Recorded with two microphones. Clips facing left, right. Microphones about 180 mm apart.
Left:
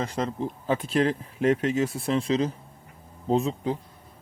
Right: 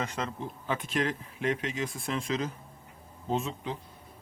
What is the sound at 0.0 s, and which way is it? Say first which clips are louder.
Speech: left 6 dB; 35° left (ahead or behind).